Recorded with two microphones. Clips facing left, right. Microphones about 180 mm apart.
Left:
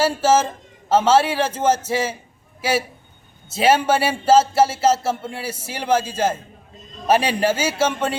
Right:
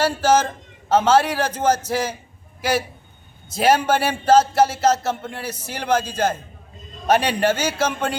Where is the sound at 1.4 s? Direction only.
25° left (ahead or behind).